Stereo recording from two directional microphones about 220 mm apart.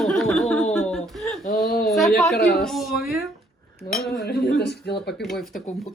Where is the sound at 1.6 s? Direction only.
45° left (ahead or behind).